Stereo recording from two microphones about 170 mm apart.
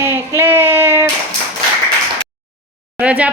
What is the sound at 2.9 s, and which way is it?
Speech, 10° right (ahead or behind).